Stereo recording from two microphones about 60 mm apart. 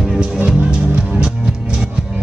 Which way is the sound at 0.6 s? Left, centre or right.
Centre.